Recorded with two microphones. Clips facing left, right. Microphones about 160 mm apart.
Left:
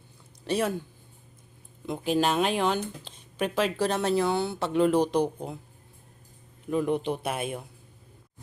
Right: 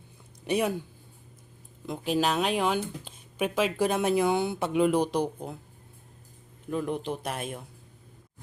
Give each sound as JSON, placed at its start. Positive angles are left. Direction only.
{"t": 0.4, "sound": "speech", "side_deg": -10}
{"t": 1.9, "sound": "speech", "side_deg": 0}
{"t": 6.7, "sound": "speech", "side_deg": 0}